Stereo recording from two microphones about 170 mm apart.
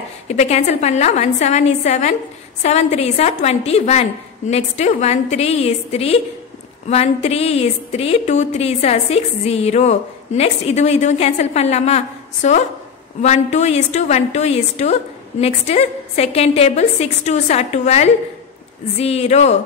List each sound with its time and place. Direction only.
0.3 s a woman's voice: 40° left (ahead or behind)